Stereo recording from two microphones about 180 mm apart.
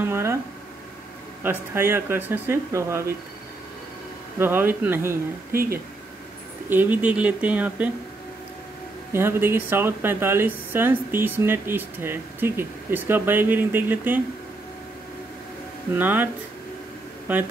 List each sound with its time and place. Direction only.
0.0 s speech: 15° right (ahead or behind)
1.4 s speech: 10° right (ahead or behind)
4.4 s speech: 10° right (ahead or behind)
5.5 s speech: 55° right (ahead or behind)
6.7 s speech: 10° right (ahead or behind)
9.1 s speech: 15° right (ahead or behind)
15.9 s speech: 10° right (ahead or behind)